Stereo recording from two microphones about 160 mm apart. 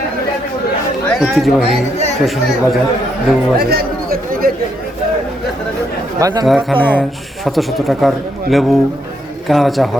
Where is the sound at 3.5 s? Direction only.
75° right (ahead or behind).